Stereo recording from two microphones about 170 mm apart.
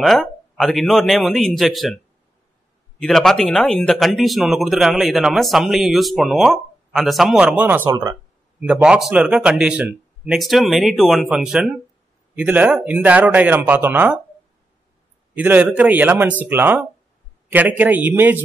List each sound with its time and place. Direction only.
0.0 s speech: centre (ahead or behind)
3.0 s speech: 5° left (ahead or behind)
7.9 s speech: 20° right (ahead or behind)
8.6 s speech: 5° right (ahead or behind)
15.3 s speech: 10° right (ahead or behind)